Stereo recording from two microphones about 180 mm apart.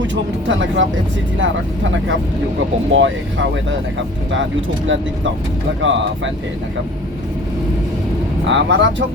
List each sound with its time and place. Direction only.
0.1 s speech: 90° right
5.8 s speech: 90° right
8.4 s speech: 90° right